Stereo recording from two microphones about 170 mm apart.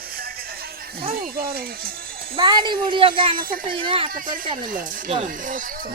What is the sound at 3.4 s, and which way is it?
Speech, 55° right (ahead or behind).